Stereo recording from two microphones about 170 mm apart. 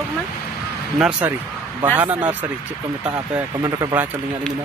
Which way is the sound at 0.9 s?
5° right (ahead or behind).